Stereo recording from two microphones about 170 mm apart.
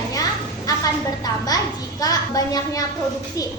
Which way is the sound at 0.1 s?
20° left (ahead or behind).